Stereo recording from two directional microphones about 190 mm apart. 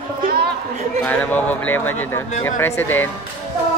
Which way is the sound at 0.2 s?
55° right (ahead or behind).